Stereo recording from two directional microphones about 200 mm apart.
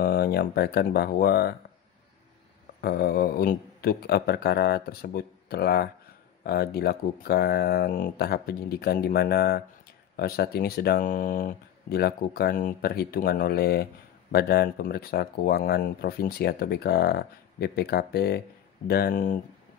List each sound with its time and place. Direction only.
0.0 s speech: 50° left (ahead or behind)
2.8 s speech: 50° left (ahead or behind)